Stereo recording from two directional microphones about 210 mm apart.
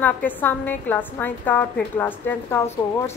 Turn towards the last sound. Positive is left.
turn(degrees=10)  # may be behind; listen again after turning